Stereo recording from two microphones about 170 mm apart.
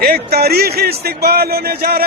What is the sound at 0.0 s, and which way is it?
A man's voice, 65° right (ahead or behind).